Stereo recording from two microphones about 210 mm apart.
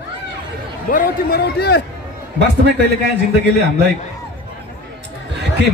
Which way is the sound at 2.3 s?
55° right (ahead or behind).